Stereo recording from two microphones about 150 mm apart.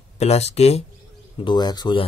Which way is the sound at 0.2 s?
45° left (ahead or behind).